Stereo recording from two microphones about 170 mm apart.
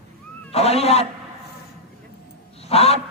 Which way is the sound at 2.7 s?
35° left (ahead or behind).